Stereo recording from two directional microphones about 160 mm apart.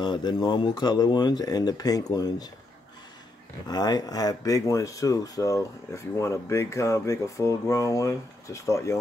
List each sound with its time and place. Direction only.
0.0 s speech: 30° left (ahead or behind)
3.6 s speech: 25° left (ahead or behind)